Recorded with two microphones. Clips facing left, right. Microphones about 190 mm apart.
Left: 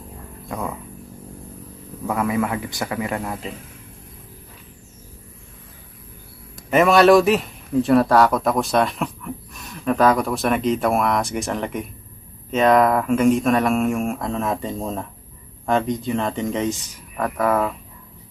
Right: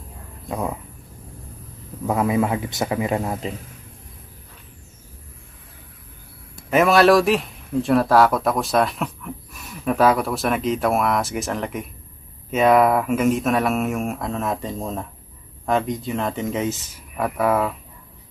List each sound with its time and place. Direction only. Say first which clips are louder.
0.4 s speech: right 2 dB; 20° right (ahead or behind)
2.0 s a man's voice: right 2 dB; 20° right (ahead or behind)
6.7 s speech: left 1 dB; centre (ahead or behind)